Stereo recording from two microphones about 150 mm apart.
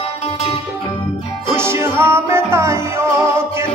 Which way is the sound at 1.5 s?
15° right (ahead or behind).